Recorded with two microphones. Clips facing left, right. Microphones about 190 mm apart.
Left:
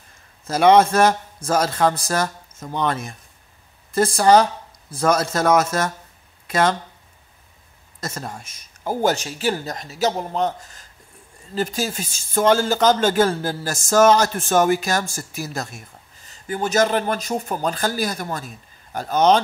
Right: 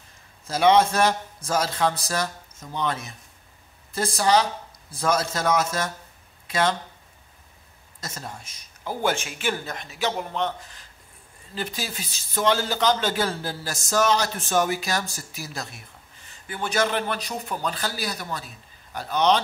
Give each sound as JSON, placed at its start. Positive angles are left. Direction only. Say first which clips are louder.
{"t": 0.5, "sound": "speech", "louder": "left 4 dB", "side_deg": 50}
{"t": 8.0, "sound": "speech", "louder": "left 6 dB", "side_deg": 55}
{"t": 8.8, "sound": "speech", "louder": "left 5 dB", "side_deg": 40}